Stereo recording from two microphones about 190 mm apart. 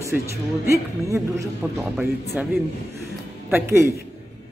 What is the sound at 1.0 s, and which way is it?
Speech, 15° right (ahead or behind).